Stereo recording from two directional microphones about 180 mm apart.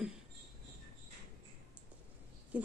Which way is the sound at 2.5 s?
10° right (ahead or behind).